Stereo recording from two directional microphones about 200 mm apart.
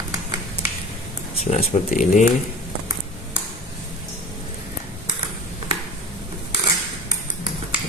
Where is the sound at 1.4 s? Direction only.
35° left (ahead or behind).